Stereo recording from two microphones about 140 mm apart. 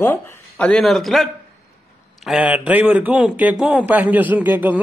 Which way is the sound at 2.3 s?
10° right (ahead or behind).